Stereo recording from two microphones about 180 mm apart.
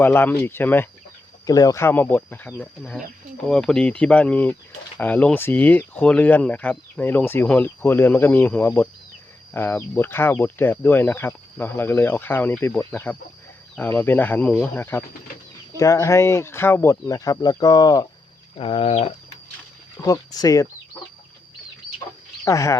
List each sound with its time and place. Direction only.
0.0 s speech: 10° left (ahead or behind)
18.5 s a sound: 30° left (ahead or behind)
20.1 s speech: 20° left (ahead or behind)
22.4 s speech: 15° left (ahead or behind)